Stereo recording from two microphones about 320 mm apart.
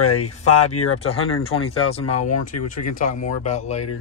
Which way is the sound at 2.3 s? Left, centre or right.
Left.